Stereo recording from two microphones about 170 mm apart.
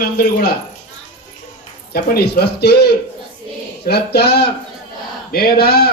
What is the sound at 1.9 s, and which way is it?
A man's voice, 65° left (ahead or behind).